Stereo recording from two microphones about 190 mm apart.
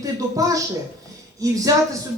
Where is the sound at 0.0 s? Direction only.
15° right (ahead or behind).